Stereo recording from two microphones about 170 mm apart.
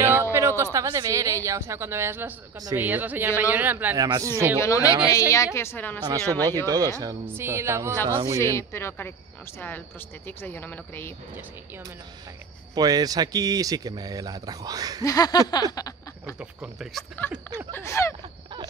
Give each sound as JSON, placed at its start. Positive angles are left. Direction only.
{"t": 0.0, "sound": "speech", "side_deg": -15}
{"t": 4.6, "sound": "speech", "side_deg": 20}
{"t": 6.0, "sound": "speech", "side_deg": -20}
{"t": 8.4, "sound": "speech", "side_deg": 15}
{"t": 12.7, "sound": "speech", "side_deg": -25}
{"t": 15.0, "sound": "a sound", "side_deg": 20}
{"t": 16.3, "sound": "speech", "side_deg": -5}
{"t": 17.6, "sound": "speech", "side_deg": 15}